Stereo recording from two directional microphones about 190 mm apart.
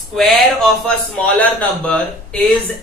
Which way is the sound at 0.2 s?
Centre (ahead or behind).